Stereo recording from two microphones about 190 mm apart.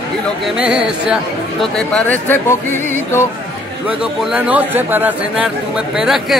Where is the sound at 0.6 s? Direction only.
5° right (ahead or behind).